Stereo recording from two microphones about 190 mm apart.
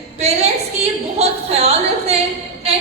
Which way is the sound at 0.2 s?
35° right (ahead or behind).